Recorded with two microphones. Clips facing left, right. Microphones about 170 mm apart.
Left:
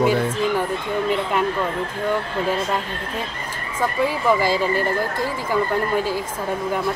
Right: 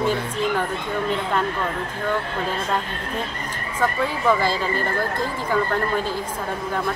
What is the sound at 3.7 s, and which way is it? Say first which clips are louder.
Speech: left 2 dB; 10° left (ahead or behind).